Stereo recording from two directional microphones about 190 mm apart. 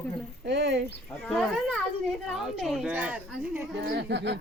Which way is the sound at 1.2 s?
Centre (ahead or behind).